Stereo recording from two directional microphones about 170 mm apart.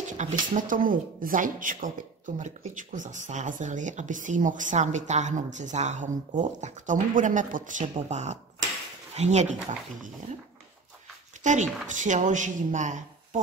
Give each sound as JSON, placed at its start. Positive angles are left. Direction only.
{"t": 0.0, "sound": "speech", "side_deg": -50}
{"t": 11.4, "sound": "speech", "side_deg": -45}